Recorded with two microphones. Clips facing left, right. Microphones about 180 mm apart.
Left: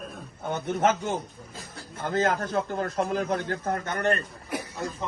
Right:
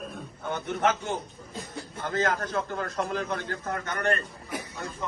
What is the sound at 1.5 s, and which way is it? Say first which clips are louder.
Speech: right 7 dB; centre (ahead or behind).